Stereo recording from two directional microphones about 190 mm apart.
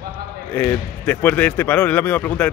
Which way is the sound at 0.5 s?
10° left (ahead or behind).